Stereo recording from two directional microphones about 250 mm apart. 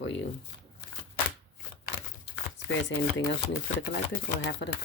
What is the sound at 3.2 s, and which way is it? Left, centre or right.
Speech, left.